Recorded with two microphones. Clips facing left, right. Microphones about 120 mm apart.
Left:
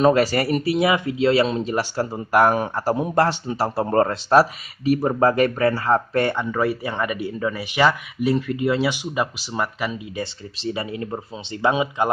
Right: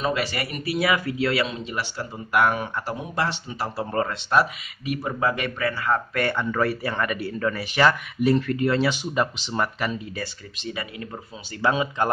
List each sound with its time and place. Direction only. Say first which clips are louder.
0.0 s speech: left 9 dB; 40° left (ahead or behind); by 6.4 s 25° left (ahead or behind)
6.5 s speech: left 2 dB; 15° left (ahead or behind)
10.1 s speech: left 4 dB; 25° left (ahead or behind)